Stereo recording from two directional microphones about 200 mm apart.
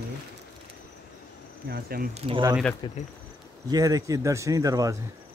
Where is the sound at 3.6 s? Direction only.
20° right (ahead or behind).